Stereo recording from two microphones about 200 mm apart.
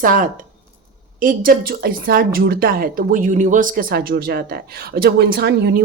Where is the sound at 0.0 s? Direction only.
40° right (ahead or behind).